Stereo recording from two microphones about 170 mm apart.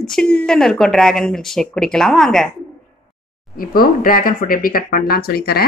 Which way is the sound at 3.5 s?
60° left (ahead or behind).